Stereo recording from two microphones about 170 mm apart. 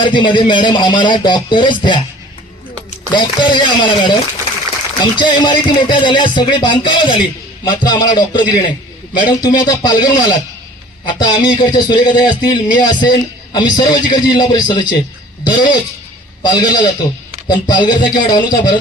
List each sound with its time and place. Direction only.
0.0 s speech: 30° left (ahead or behind)
3.1 s speech: 25° left (ahead or behind)
5.2 s speech: 25° left (ahead or behind)